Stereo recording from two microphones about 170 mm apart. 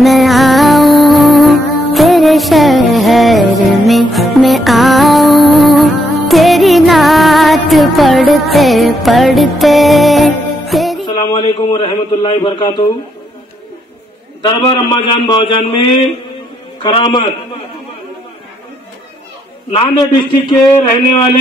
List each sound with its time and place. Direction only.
0.0 s music: centre (ahead or behind)
11.1 s a man's voice: 25° left (ahead or behind)
14.4 s a man's voice: 30° left (ahead or behind)
16.8 s a man's voice: 30° left (ahead or behind)
19.7 s a man's voice: 25° left (ahead or behind)